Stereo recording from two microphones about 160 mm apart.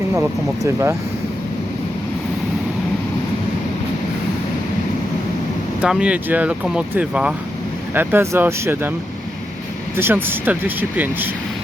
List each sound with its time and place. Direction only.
0.2 s speech: 15° right (ahead or behind)
5.8 s speech: 5° right (ahead or behind)
10.0 s speech: 15° right (ahead or behind)